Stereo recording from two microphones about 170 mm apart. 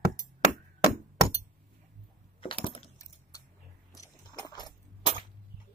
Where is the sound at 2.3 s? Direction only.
30° left (ahead or behind).